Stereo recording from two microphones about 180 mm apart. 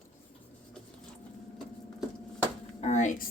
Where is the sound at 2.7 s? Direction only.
40° left (ahead or behind).